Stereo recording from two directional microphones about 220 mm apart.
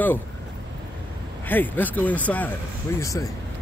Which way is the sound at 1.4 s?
10° left (ahead or behind).